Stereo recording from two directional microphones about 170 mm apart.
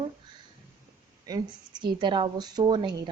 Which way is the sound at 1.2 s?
25° right (ahead or behind).